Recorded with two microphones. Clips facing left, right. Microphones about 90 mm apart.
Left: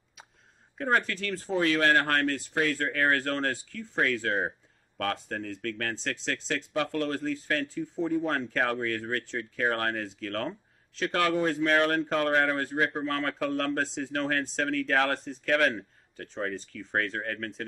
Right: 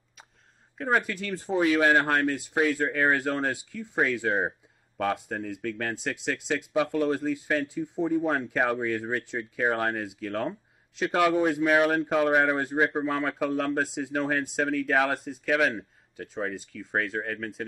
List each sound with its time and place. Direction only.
0.7 s speech: 5° right (ahead or behind)